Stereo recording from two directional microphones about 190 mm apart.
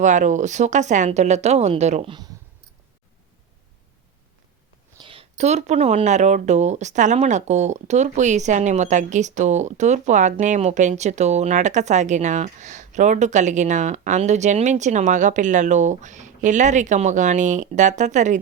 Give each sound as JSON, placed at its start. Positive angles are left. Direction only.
{"t": 0.0, "sound": "speech", "side_deg": -40}
{"t": 4.9, "sound": "speech", "side_deg": -30}